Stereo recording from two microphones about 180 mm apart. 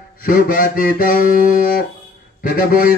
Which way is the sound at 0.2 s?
55° left (ahead or behind).